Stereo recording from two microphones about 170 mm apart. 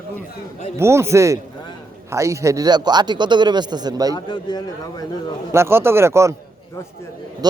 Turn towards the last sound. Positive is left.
turn(degrees=-15)  # may be behind; listen again after turning